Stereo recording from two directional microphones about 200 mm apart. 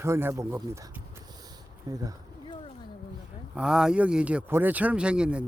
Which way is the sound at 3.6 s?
5° right (ahead or behind).